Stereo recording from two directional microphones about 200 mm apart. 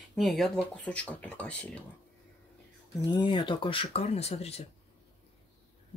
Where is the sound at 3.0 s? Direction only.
20° left (ahead or behind).